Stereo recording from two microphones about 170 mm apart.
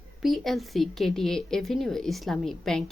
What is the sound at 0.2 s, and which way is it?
A woman's voice, centre (ahead or behind).